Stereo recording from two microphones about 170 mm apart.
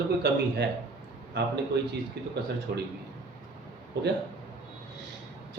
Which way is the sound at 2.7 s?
70° right (ahead or behind).